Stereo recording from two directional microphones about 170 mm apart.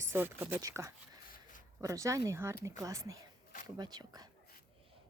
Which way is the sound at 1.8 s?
20° right (ahead or behind).